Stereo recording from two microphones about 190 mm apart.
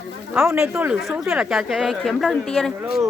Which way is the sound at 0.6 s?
5° right (ahead or behind).